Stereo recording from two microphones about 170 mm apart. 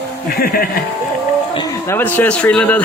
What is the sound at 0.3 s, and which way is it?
Speech, 60° left (ahead or behind).